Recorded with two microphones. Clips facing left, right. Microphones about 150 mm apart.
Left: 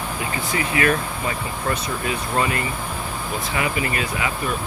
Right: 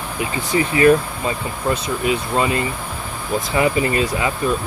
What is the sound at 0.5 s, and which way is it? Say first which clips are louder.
Speech: right 8 dB; 30° right (ahead or behind).